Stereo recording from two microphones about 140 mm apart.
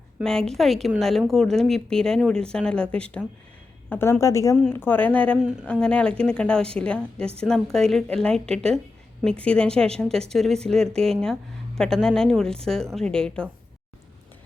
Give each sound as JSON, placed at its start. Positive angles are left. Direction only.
{"t": 0.2, "sound": "speech", "side_deg": 5}
{"t": 4.5, "sound": "a woman's voice", "side_deg": 5}
{"t": 5.4, "sound": "speech", "side_deg": -5}
{"t": 5.8, "sound": "a woman's voice", "side_deg": 5}